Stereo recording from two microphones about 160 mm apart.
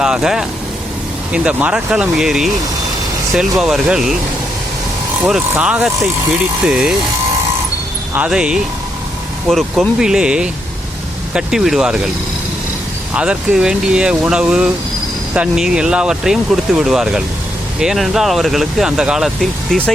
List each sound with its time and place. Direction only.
0.0 s speech: 5° right (ahead or behind)
3.6 s speech: 5° right (ahead or behind)
5.2 s speech: 5° right (ahead or behind)
8.1 s speech: 5° right (ahead or behind)
13.1 s speech: 5° right (ahead or behind)